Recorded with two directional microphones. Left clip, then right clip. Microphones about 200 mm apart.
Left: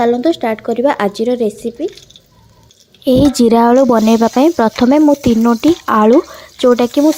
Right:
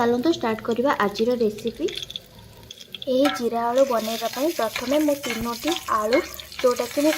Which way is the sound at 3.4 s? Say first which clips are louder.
Left 11 dB; 50° left (ahead or behind).